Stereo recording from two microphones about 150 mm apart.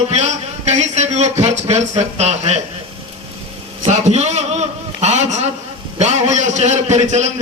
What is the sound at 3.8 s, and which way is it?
A man's voice, 50° right (ahead or behind).